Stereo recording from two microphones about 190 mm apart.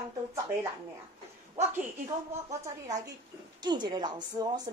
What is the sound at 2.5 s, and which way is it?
A woman's voice, 20° right (ahead or behind).